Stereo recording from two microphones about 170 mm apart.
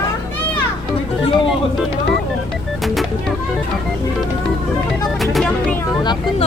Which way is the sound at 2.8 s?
Centre (ahead or behind).